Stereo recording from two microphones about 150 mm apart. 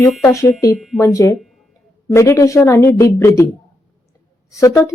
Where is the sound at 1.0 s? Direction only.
20° left (ahead or behind).